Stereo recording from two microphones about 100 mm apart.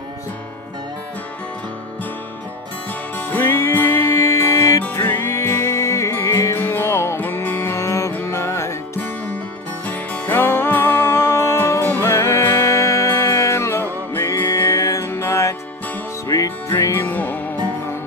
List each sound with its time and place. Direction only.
2.9 s music: 20° left (ahead or behind)
9.8 s music: 15° left (ahead or behind)